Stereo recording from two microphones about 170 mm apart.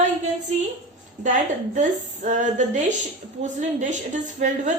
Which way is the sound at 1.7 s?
45° right (ahead or behind).